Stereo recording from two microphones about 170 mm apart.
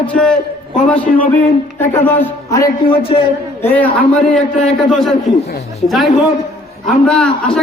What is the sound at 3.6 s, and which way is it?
A man's voice, 10° left (ahead or behind).